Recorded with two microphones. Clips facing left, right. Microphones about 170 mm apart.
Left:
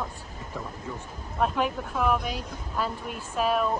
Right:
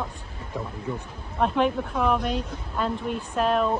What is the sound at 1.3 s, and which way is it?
Speech, 5° left (ahead or behind).